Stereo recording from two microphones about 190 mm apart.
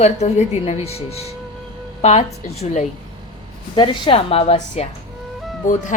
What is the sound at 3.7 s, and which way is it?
A woman's voice, 25° left (ahead or behind).